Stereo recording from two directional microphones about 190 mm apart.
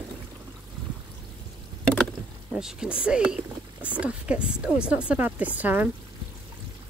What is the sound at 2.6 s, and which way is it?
Speech, 5° right (ahead or behind).